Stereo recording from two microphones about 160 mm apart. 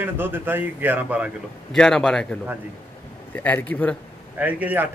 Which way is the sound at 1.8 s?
5° left (ahead or behind).